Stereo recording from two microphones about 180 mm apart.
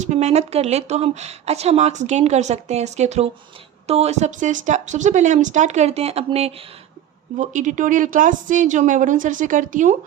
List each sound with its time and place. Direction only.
0.0 s a woman's voice: 40° right (ahead or behind)